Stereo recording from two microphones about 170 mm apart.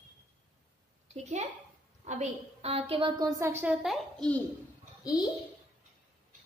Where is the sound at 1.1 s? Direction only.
40° right (ahead or behind); by 4.3 s centre (ahead or behind).